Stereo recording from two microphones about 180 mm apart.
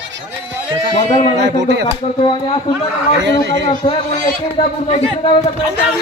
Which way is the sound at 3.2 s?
80° right.